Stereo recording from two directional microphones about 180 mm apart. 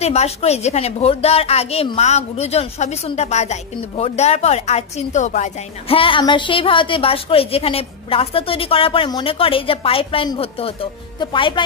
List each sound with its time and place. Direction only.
0.0 s a woman's voice: 35° left (ahead or behind)